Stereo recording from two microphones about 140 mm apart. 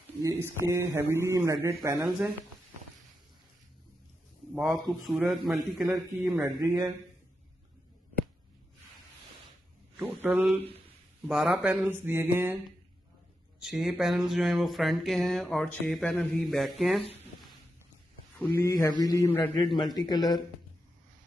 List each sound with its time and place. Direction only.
0.2 s speech: 20° right (ahead or behind)
2.0 s speech: 10° right (ahead or behind)
4.6 s speech: centre (ahead or behind)
6.4 s speech: 25° right (ahead or behind)
10.0 s speech: 15° right (ahead or behind)
11.2 s speech: centre (ahead or behind)
13.6 s speech: 5° right (ahead or behind)
18.4 s speech: 20° left (ahead or behind)
19.2 s a man's voice: 15° left (ahead or behind)
19.8 s speech: 30° left (ahead or behind)